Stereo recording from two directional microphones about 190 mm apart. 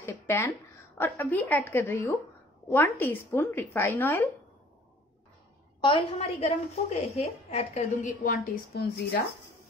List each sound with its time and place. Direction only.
0.0 s a sound: 10° left (ahead or behind)
0.9 s a woman's voice: 10° left (ahead or behind)
5.8 s a woman's voice: 25° left (ahead or behind); by 9.2 s 50° left (ahead or behind)